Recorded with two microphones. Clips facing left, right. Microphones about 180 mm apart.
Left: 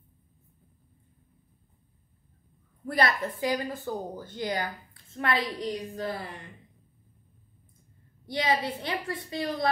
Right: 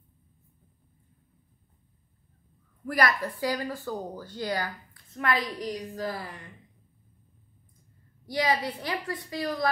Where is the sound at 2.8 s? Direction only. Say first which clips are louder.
Even; 25° left (ahead or behind).